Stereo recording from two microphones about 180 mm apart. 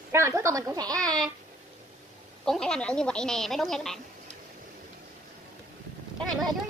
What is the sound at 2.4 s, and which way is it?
A woman's voice, 5° left (ahead or behind).